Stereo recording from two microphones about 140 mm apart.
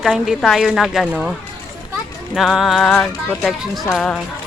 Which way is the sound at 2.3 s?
Centre (ahead or behind).